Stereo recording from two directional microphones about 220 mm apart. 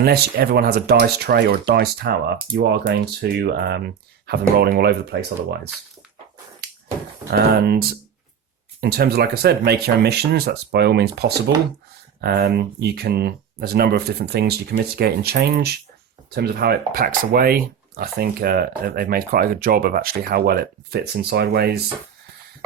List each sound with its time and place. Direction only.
0.0 s speech: 45° right (ahead or behind)
7.3 s speech: 45° right (ahead or behind)